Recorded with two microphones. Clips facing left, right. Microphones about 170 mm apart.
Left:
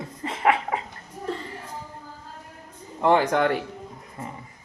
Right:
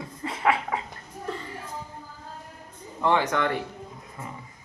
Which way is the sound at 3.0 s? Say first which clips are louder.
Left 4 dB; 45° left (ahead or behind).